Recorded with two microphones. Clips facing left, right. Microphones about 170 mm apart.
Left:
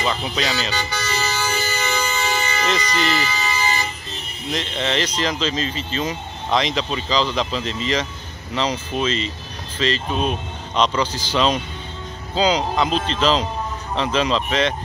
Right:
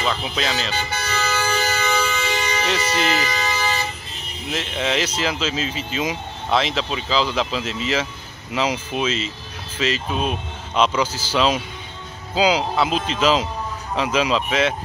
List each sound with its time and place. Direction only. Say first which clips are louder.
0.0 s speech: left 1 dB; centre (ahead or behind)
0.9 s vehicle: right 3 dB; 55° right (ahead or behind)
2.6 s speech: even; 5° right (ahead or behind)
4.5 s speech: even; 5° right (ahead or behind)